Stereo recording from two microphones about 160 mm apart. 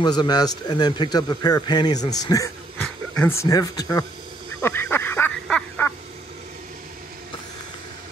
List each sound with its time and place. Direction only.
0.0 s a man's voice: 25° left (ahead or behind)
2.8 s speech: 10° left (ahead or behind)
4.6 s a sound: 15° left (ahead or behind)